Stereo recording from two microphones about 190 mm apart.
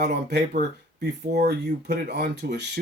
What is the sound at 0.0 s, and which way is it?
Speech, 60° right (ahead or behind).